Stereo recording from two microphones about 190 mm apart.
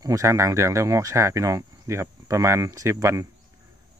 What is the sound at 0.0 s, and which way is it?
Speech, 15° right (ahead or behind).